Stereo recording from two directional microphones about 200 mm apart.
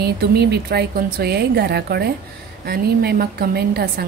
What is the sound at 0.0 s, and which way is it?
A woman's voice, 55° right (ahead or behind).